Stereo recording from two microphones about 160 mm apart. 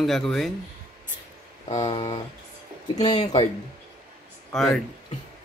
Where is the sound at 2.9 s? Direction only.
25° left (ahead or behind).